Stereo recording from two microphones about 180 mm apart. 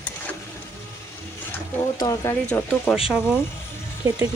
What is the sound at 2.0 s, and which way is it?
Speech, 20° left (ahead or behind).